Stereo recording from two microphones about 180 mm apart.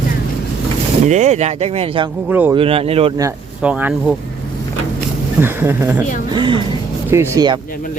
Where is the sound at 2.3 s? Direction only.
10° right (ahead or behind).